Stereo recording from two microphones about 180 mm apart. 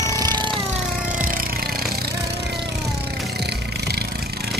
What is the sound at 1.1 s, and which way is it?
Music, 50° right (ahead or behind).